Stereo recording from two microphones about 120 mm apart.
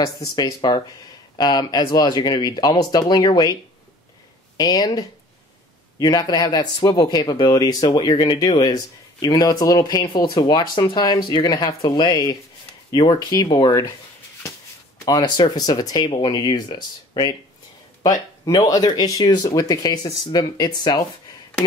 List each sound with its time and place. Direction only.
0.0 s speech: 30° left (ahead or behind)
4.6 s speech: 35° left (ahead or behind)
15.0 s speech: 35° left (ahead or behind)